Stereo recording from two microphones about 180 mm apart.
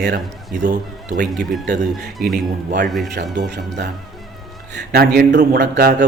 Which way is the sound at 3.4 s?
70° right (ahead or behind).